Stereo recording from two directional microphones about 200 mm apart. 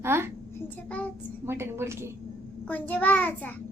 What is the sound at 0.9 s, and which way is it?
Child singing, 5° left (ahead or behind).